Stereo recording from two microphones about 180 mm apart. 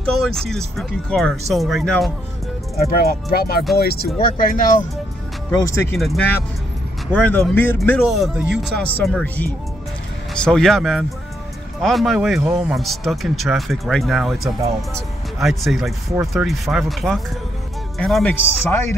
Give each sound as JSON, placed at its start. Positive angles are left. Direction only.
{"t": 0.3, "sound": "speech", "side_deg": 0}
{"t": 2.8, "sound": "speech", "side_deg": 55}
{"t": 5.9, "sound": "speech", "side_deg": 0}
{"t": 8.1, "sound": "speech", "side_deg": 0}